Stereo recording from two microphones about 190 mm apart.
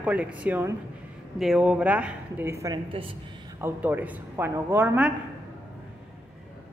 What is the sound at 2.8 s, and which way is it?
Speech, 30° right (ahead or behind).